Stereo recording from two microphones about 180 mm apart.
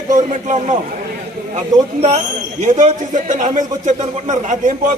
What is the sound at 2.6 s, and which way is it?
A man's voice, 45° right (ahead or behind).